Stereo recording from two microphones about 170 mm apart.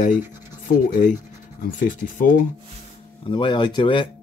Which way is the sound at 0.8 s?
50° left (ahead or behind).